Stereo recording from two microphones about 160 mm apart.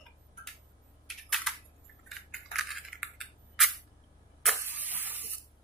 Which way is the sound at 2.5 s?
Centre (ahead or behind).